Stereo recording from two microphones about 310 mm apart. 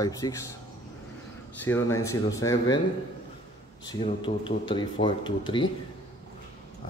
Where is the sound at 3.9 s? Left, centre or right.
Centre.